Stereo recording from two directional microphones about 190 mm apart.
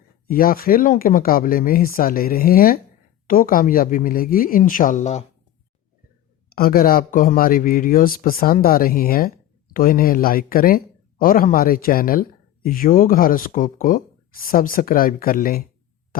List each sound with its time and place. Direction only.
0.3 s speech: 50° left (ahead or behind)
6.5 s speech: 50° left (ahead or behind)